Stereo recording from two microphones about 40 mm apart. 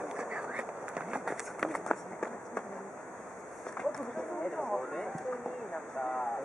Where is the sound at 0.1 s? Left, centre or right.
Centre.